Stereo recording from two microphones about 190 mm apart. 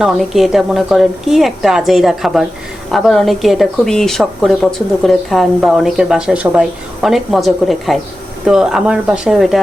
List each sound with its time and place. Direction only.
0.0 s speech: centre (ahead or behind)